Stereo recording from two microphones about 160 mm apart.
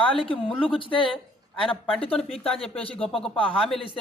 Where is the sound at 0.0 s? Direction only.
35° left (ahead or behind).